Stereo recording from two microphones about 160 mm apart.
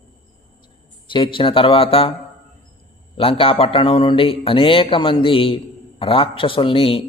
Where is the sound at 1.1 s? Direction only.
30° left (ahead or behind).